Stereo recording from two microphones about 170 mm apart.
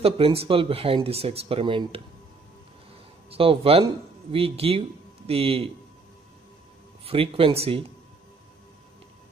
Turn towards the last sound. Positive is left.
turn(degrees=-35)  # may be behind; listen again after turning